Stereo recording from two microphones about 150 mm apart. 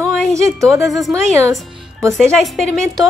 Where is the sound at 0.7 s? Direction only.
20° right (ahead or behind).